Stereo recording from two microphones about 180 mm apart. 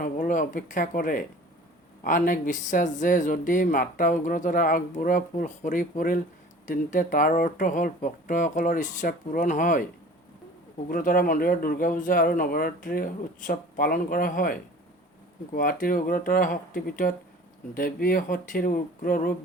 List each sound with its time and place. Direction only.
0.0 s speech: 45° left (ahead or behind)
10.8 s speech: 50° left (ahead or behind)